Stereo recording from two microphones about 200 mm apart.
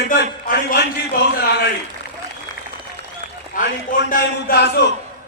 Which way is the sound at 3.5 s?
40° left (ahead or behind).